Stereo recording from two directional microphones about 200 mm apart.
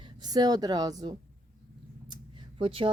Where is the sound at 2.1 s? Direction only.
25° right (ahead or behind).